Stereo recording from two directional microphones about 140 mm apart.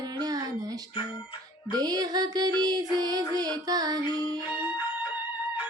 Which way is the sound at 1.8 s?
25° right (ahead or behind).